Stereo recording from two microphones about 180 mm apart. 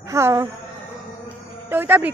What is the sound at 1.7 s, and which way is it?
Speech, 10° right (ahead or behind).